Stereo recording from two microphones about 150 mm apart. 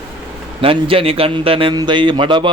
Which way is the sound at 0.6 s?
35° right (ahead or behind).